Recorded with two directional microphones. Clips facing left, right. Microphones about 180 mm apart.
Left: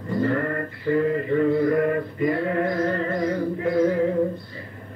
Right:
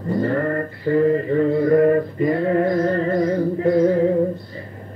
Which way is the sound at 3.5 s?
35° right (ahead or behind).